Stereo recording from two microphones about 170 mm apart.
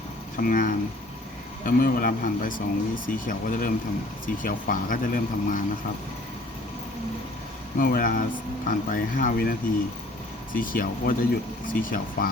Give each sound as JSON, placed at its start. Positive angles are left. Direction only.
{"t": 0.3, "sound": "speech", "side_deg": 55}
{"t": 7.8, "sound": "speech", "side_deg": 55}